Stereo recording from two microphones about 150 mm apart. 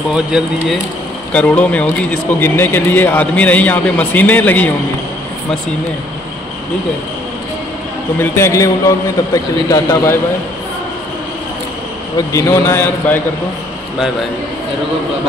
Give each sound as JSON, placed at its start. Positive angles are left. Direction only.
{"t": 0.1, "sound": "speech", "side_deg": -5}
{"t": 1.3, "sound": "a man's voice", "side_deg": 10}
{"t": 8.2, "sound": "a man's voice", "side_deg": 20}
{"t": 12.3, "sound": "a man's voice", "side_deg": 20}